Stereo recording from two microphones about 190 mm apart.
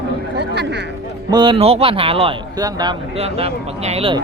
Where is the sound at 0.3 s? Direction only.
65° right (ahead or behind).